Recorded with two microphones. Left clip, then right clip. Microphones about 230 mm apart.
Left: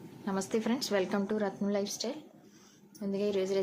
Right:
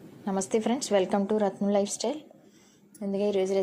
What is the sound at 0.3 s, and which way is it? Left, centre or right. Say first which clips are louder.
A woman's voice: right 5 dB; centre.